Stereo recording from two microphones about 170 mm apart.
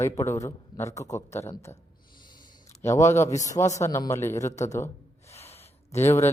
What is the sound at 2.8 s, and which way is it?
Speech, 15° left (ahead or behind).